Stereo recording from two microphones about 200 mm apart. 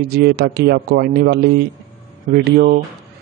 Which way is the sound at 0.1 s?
55° right (ahead or behind).